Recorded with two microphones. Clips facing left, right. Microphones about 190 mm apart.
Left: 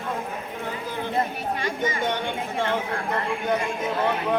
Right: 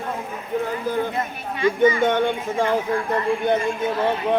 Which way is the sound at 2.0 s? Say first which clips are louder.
Right 7 dB; 50° right (ahead or behind).